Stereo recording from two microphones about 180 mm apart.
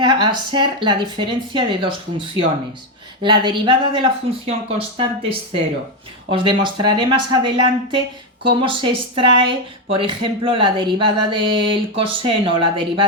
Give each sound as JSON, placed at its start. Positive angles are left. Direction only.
{"t": 0.0, "sound": "speech", "side_deg": -25}